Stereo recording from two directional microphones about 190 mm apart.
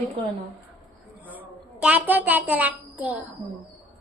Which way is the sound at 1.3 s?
10° right (ahead or behind).